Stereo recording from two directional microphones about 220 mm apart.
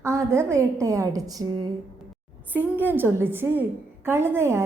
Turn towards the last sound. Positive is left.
turn(degrees=-10)  # may be behind; listen again after turning